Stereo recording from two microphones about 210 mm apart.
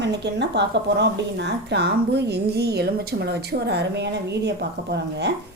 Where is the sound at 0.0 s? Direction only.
55° right (ahead or behind).